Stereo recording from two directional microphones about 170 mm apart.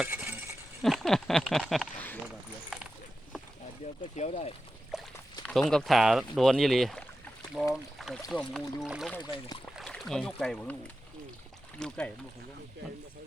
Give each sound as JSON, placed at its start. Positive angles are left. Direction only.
{"t": 0.0, "sound": "coin", "side_deg": -10}
{"t": 0.8, "sound": "speech", "side_deg": 0}
{"t": 2.2, "sound": "mechanisms", "side_deg": 0}
{"t": 4.1, "sound": "speech", "side_deg": 45}
{"t": 4.9, "sound": "a sound", "side_deg": -5}
{"t": 5.5, "sound": "speech", "side_deg": 5}
{"t": 11.8, "sound": "speech", "side_deg": 5}